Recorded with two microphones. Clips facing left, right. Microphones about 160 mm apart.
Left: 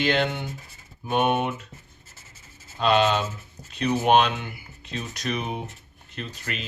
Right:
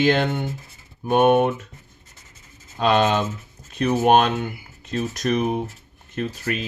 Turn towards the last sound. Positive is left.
turn(degrees=-50)  # may be behind; listen again after turning